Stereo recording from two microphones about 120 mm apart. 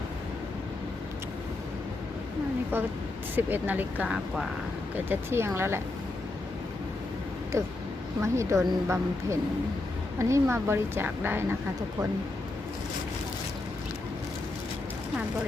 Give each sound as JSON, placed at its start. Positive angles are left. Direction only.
{"t": 3.3, "sound": "speech", "side_deg": -15}
{"t": 5.0, "sound": "a woman's voice", "side_deg": -20}
{"t": 7.5, "sound": "a woman's voice", "side_deg": -25}